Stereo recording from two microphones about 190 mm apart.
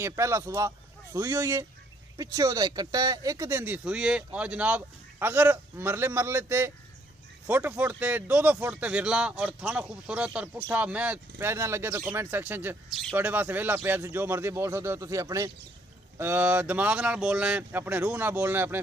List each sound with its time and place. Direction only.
0.0 s speech: 15° right (ahead or behind)